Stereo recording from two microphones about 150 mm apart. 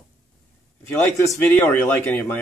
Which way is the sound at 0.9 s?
10° left (ahead or behind).